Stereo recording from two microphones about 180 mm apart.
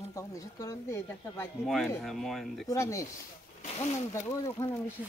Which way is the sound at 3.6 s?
35° left (ahead or behind).